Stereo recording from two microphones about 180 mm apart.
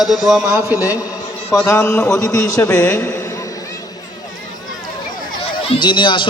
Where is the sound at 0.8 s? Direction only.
20° left (ahead or behind).